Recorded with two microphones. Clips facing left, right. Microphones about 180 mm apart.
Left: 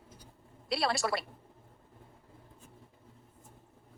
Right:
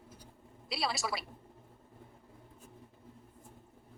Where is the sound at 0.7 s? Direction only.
Centre (ahead or behind).